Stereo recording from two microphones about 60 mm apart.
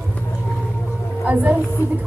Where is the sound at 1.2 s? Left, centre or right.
Right.